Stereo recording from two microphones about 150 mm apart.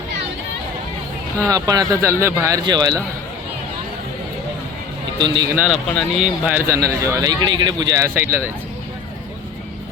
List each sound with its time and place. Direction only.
1.5 s speech: 25° right (ahead or behind)
5.2 s speech: 30° right (ahead or behind)
5.5 s speech: 5° right (ahead or behind)
6.7 s speech: 20° right (ahead or behind)